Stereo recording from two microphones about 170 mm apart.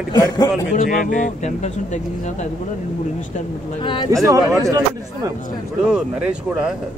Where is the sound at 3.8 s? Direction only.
25° left (ahead or behind).